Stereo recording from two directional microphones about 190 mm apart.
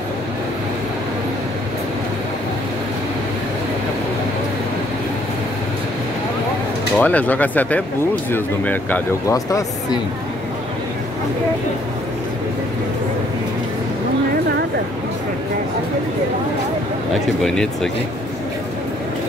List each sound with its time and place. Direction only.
7.0 s speech: 10° left (ahead or behind)
17.4 s speech: 5° left (ahead or behind)